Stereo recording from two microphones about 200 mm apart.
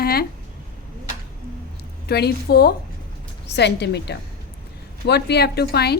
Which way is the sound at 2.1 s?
55° left (ahead or behind).